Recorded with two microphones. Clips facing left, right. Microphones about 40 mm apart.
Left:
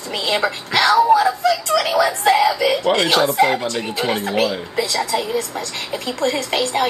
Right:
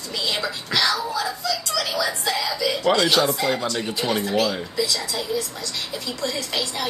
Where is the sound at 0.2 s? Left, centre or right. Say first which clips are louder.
Left 6 dB; left.